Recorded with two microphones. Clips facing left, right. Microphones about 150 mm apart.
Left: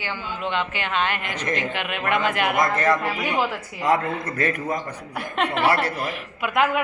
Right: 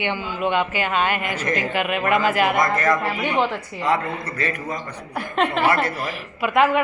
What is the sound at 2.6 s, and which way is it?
Speech, 30° left (ahead or behind).